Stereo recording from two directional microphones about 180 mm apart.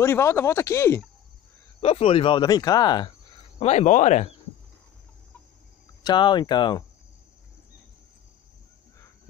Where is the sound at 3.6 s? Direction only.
40° left (ahead or behind).